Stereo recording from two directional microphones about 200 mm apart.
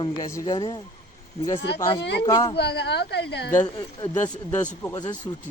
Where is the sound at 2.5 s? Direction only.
55° left (ahead or behind).